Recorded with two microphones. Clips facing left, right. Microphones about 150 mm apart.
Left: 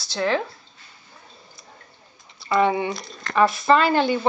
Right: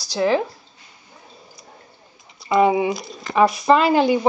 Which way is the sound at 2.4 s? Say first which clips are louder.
Right 4 dB; centre (ahead or behind).